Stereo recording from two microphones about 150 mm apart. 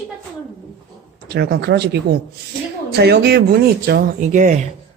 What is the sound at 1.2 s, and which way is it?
Speech, 90° right.